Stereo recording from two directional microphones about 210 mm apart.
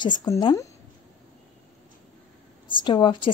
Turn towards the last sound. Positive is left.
turn(degrees=20)  # may be behind; listen again after turning